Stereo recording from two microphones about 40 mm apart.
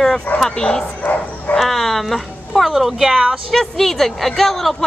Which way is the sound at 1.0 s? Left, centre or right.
Left.